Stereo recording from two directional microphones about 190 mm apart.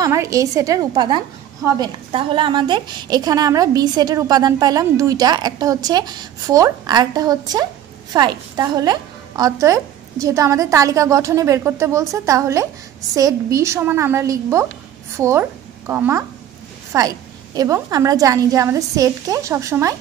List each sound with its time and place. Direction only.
0.0 s a woman's voice: 15° right (ahead or behind)